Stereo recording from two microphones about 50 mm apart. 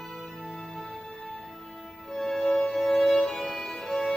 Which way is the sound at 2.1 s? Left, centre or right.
Centre.